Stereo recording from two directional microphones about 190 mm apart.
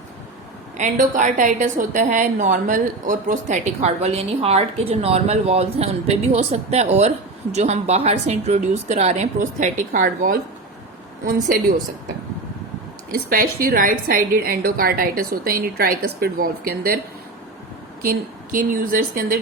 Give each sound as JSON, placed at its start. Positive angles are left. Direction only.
{"t": 0.8, "sound": "a woman's voice", "side_deg": -40}
{"t": 13.1, "sound": "a woman's voice", "side_deg": -50}
{"t": 18.0, "sound": "a woman's voice", "side_deg": -45}